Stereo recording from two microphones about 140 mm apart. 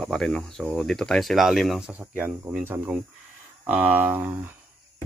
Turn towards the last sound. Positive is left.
turn(degrees=-15)  # may be behind; listen again after turning